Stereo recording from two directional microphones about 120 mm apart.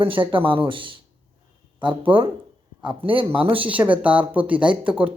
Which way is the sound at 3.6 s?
10° right (ahead or behind).